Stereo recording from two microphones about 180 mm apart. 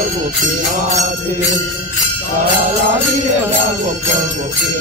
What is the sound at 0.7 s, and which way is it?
Mantra, 40° right (ahead or behind).